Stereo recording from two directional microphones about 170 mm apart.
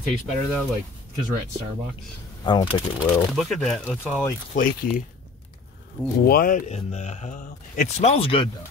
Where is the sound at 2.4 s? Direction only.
30° left (ahead or behind).